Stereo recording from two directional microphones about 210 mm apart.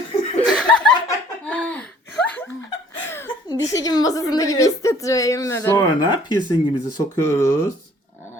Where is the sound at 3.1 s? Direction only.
10° left (ahead or behind).